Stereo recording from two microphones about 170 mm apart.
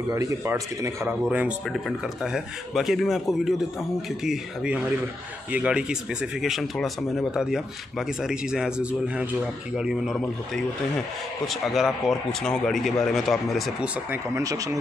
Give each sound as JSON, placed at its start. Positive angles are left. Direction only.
{"t": 0.1, "sound": "speech", "side_deg": -20}
{"t": 11.4, "sound": "speech", "side_deg": 0}
{"t": 14.1, "sound": "speech", "side_deg": -20}